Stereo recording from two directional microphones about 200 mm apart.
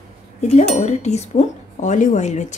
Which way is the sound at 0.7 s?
35° left (ahead or behind).